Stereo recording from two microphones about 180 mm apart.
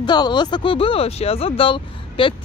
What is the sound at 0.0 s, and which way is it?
Speech, 25° left (ahead or behind).